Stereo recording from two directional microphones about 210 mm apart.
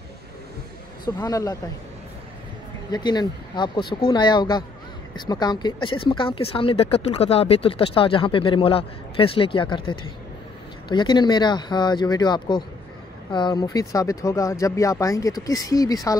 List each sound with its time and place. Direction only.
1.0 s speech: 15° left (ahead or behind)
2.9 s speech: 20° left (ahead or behind)